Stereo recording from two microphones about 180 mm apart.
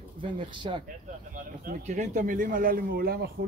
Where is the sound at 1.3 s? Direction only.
45° right (ahead or behind).